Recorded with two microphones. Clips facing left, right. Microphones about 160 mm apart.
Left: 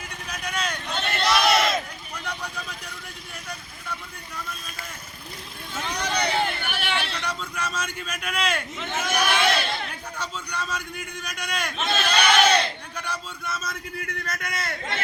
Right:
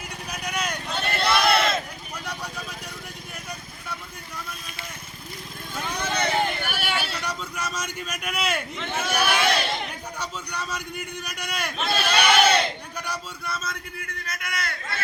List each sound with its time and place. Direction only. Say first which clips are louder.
0.3 s vehicle: even; 10° right (ahead or behind)
5.7 s vehicle: even; 5° right (ahead or behind)
8.9 s a sound: even; 5° right (ahead or behind)
14.0 s a man's voice: left 3 dB; 40° left (ahead or behind)